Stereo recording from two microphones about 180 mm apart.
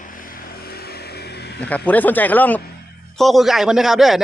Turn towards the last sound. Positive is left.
turn(degrees=0)  # may be behind; listen again after turning